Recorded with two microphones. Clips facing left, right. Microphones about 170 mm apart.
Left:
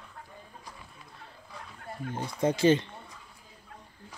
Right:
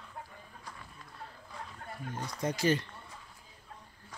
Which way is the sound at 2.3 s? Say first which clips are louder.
Left 7 dB; 25° left (ahead or behind).